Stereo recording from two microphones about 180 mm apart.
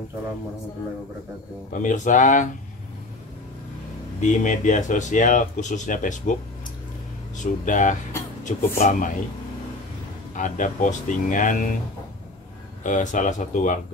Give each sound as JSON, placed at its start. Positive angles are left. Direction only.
{"t": 1.7, "sound": "speech", "side_deg": 45}
{"t": 4.2, "sound": "speech", "side_deg": 45}
{"t": 7.3, "sound": "speech", "side_deg": 45}
{"t": 10.3, "sound": "speech", "side_deg": 45}
{"t": 12.8, "sound": "speech", "side_deg": 45}